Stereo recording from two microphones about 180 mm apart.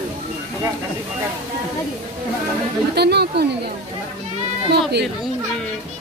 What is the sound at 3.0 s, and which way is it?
Speech, 65° right (ahead or behind).